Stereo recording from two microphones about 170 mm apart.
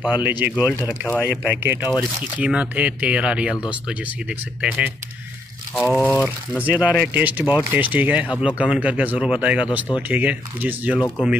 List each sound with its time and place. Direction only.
0.1 s speech: 10° right (ahead or behind)
1.0 s speech: 10° left (ahead or behind)
1.8 s speech: 25° left (ahead or behind)
2.3 s speech: 10° right (ahead or behind)
4.6 s speech: 10° right (ahead or behind)
5.8 s speech: 5° left (ahead or behind)
6.6 s speech: 5° right (ahead or behind)